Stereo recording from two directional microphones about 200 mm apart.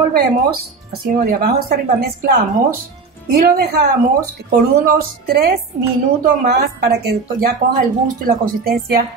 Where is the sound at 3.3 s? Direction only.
50° right (ahead or behind).